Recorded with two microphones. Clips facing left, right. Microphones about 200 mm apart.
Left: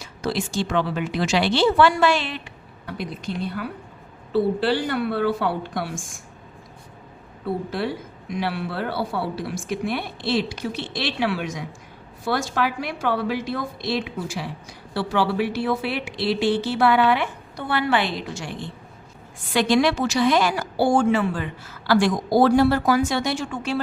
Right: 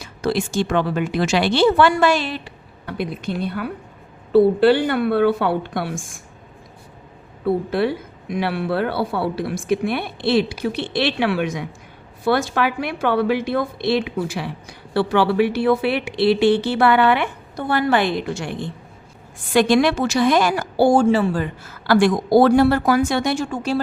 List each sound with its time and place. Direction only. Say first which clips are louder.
0.0 s a woman's voice: right 4 dB; 55° right (ahead or behind); by 2.5 s 40° right (ahead or behind)
2.8 s a woman's voice: right 5 dB; 60° right (ahead or behind)
7.7 s a woman's voice: right 6 dB; 60° right (ahead or behind)
17.6 s a woman's voice: right 4 dB; 45° right (ahead or behind)